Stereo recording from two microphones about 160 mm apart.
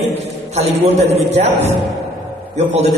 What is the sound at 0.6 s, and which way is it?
A man's voice, 40° right (ahead or behind).